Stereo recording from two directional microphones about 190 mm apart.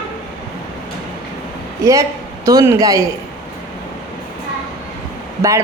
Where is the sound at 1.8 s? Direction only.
15° right (ahead or behind).